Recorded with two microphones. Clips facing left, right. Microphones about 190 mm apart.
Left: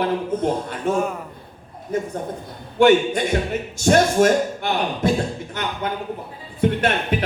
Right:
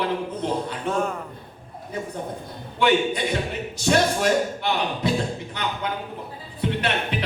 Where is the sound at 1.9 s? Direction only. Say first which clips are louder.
Left 5 dB; 45° left (ahead or behind).